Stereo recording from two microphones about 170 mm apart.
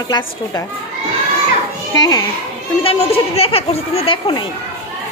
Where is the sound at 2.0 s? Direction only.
20° left (ahead or behind).